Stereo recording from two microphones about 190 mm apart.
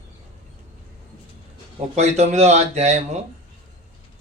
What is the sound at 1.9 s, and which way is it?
A man's voice, 35° right (ahead or behind).